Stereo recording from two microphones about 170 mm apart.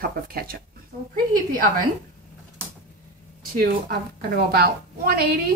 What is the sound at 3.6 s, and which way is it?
A woman's voice, 65° right (ahead or behind).